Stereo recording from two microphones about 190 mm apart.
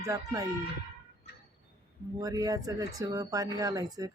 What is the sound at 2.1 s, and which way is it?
Speech, 20° right (ahead or behind).